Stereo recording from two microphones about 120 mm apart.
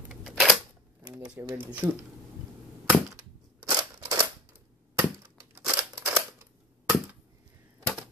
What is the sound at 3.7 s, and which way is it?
Scissors, 35° right (ahead or behind).